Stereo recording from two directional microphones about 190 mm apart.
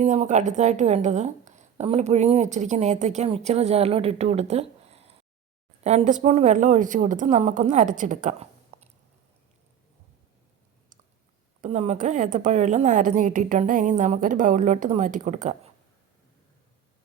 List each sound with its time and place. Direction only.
0.0 s a woman's voice: 40° right (ahead or behind)
11.6 s a woman's voice: 35° right (ahead or behind)